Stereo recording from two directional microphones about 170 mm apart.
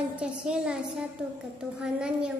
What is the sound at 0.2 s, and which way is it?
A child's voice, 5° right (ahead or behind).